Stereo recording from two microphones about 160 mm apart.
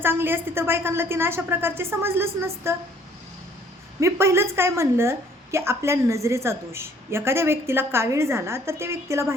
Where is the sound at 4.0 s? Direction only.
15° right (ahead or behind).